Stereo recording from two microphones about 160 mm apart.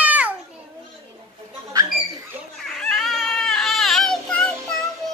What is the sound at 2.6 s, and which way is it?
Baby cry, 5° left (ahead or behind).